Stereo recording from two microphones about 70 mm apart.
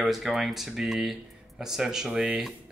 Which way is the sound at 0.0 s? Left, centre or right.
Centre.